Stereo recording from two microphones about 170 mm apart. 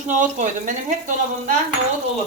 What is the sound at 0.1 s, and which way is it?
Speech, 45° right (ahead or behind).